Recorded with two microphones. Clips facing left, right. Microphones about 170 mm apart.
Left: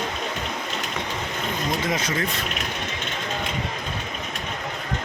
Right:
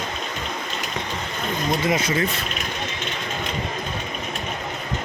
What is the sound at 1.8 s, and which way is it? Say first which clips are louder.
Speech: right 4 dB; 10° right (ahead or behind).